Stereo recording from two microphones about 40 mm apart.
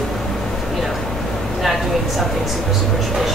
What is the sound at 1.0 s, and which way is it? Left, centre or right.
Speech, centre.